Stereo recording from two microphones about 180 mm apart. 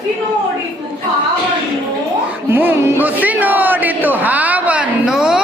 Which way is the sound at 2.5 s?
10° right (ahead or behind).